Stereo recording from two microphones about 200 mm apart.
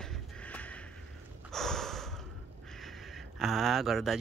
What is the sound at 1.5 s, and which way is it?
Snort, centre (ahead or behind).